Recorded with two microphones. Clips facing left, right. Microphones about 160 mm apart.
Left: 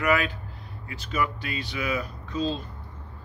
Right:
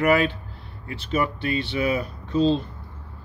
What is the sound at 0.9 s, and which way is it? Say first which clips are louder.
A man's voice: right 4 dB; 30° right (ahead or behind).